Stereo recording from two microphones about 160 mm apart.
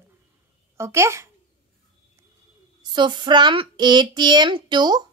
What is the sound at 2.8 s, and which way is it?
A woman's voice, 30° right (ahead or behind).